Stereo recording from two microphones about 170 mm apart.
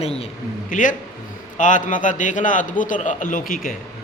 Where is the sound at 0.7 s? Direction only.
50° left (ahead or behind).